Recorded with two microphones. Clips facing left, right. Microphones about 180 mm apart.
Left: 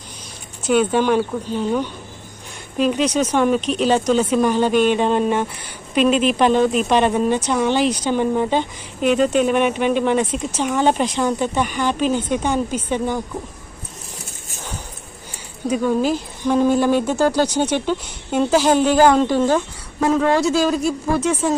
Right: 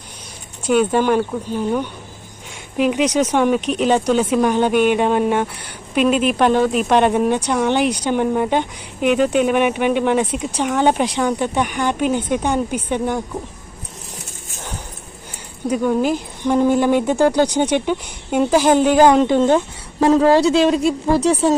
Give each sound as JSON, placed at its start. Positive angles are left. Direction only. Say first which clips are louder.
{"t": 0.7, "sound": "a woman's voice", "louder": "right 1 dB", "side_deg": -5}
{"t": 11.2, "sound": "speech", "louder": "right 1 dB", "side_deg": 0}
{"t": 11.8, "sound": "a woman's voice", "louder": "even", "side_deg": -15}
{"t": 15.6, "sound": "a woman's voice", "louder": "right 1 dB", "side_deg": -10}